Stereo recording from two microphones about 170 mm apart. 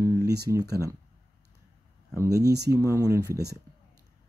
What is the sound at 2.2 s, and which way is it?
Speech, 20° right (ahead or behind).